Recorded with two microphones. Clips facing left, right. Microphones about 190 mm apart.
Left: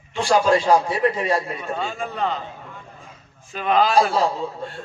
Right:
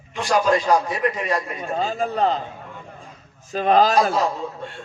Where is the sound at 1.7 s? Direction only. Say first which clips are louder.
Right 6 dB; 35° right (ahead or behind).